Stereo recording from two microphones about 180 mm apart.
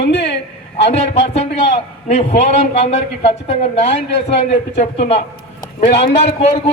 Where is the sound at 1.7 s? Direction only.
35° left (ahead or behind).